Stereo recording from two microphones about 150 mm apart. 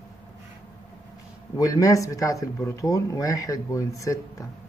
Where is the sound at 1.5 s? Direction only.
20° left (ahead or behind).